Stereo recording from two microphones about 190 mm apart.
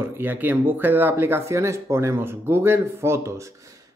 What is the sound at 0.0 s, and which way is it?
Speech, 10° right (ahead or behind).